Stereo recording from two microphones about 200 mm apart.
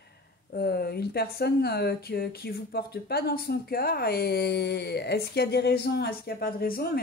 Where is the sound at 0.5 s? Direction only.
50° left (ahead or behind).